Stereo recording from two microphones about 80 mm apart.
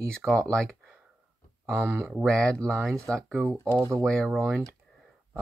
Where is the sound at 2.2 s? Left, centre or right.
Centre.